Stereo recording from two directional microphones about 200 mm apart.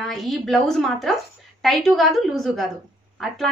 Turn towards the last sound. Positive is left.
turn(degrees=0)  # may be behind; listen again after turning